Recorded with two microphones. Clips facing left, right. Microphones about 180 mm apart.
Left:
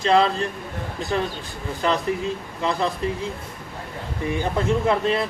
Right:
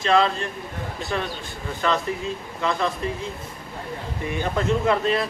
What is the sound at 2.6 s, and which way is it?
Speech, 30° left (ahead or behind).